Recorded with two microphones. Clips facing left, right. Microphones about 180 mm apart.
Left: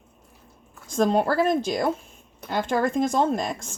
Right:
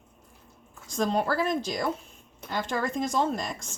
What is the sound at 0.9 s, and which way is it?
A woman's voice, 55° left (ahead or behind).